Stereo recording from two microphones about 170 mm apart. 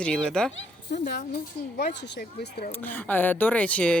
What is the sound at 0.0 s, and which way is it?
Speech, 5° left (ahead or behind).